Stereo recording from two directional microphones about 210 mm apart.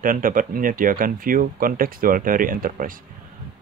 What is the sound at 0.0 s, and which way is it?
Speech, 40° right (ahead or behind).